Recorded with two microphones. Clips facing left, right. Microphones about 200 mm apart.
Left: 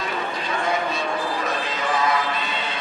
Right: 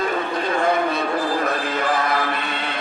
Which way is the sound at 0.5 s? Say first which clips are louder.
Right 5 dB; 55° right (ahead or behind).